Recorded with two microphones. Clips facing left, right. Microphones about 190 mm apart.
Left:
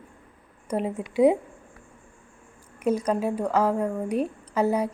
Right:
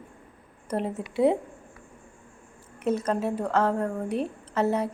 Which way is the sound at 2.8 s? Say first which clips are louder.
Left 2 dB; 10° left (ahead or behind).